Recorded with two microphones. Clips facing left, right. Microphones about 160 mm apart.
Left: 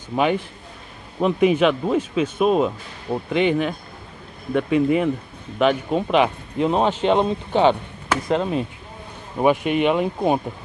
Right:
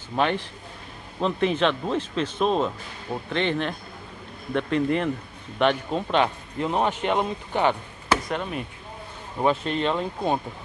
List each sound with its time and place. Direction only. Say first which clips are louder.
0.1 s speech: left 4 dB; 10° left (ahead or behind)
6.7 s speech: left 5 dB; 20° left (ahead or behind)
9.4 s speech: left 5 dB; 15° left (ahead or behind)